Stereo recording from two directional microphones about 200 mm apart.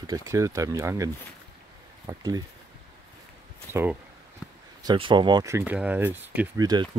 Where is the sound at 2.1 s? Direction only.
20° right (ahead or behind).